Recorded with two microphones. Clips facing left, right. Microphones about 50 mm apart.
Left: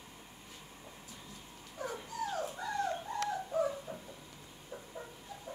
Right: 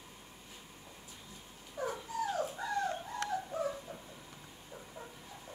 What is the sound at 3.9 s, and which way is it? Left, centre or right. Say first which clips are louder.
Dog: left 2 dB; centre.